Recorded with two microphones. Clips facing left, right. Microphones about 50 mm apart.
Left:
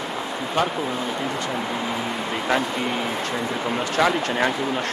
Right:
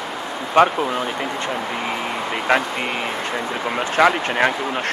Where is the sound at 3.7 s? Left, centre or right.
Right.